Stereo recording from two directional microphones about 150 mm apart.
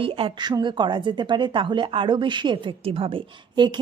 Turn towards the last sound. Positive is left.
turn(degrees=-30)  # may be behind; listen again after turning